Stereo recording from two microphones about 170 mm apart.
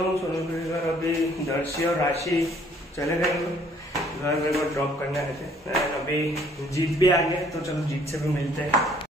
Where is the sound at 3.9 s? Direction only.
20° left (ahead or behind).